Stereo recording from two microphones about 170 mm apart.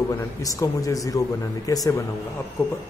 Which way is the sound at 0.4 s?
20° left (ahead or behind).